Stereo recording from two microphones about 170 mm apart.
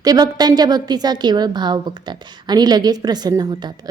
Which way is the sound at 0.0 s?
25° right (ahead or behind).